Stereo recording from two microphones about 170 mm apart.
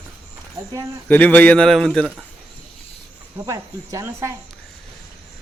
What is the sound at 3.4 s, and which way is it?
Speech, 20° right (ahead or behind).